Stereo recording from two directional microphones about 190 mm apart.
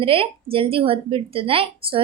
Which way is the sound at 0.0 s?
30° right (ahead or behind).